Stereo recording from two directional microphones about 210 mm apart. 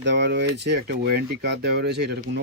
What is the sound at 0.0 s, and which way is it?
Speech, 55° right (ahead or behind).